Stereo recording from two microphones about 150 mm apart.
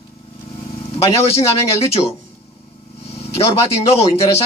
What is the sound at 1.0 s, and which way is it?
Speech, 45° left (ahead or behind).